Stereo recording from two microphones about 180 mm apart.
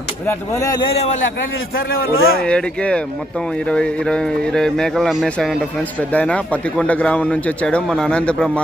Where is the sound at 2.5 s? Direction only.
5° left (ahead or behind).